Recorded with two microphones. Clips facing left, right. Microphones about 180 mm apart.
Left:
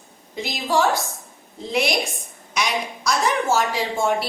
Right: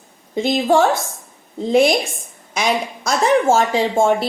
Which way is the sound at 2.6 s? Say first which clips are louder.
Right 5 dB; 50° right (ahead or behind).